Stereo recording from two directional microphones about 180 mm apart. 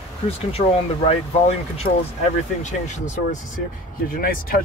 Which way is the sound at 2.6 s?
40° left (ahead or behind).